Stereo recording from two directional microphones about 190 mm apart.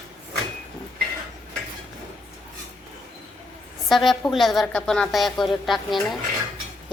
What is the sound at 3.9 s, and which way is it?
A woman's voice, centre (ahead or behind).